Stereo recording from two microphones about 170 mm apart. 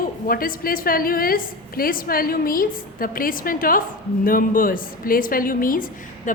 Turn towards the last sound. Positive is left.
turn(degrees=55)  # may be behind; listen again after turning